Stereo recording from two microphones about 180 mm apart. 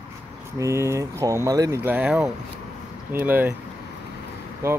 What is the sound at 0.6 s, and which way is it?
Speech, 15° right (ahead or behind).